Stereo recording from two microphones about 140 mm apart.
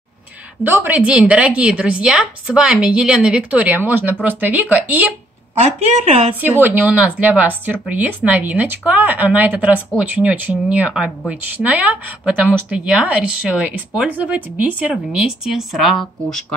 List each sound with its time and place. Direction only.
0.7 s a woman's voice: 15° right (ahead or behind)
5.6 s a woman's voice: 50° right (ahead or behind)
6.4 s a woman's voice: 15° right (ahead or behind)